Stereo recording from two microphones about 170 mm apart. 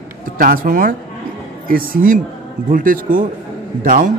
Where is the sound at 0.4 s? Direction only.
55° right (ahead or behind).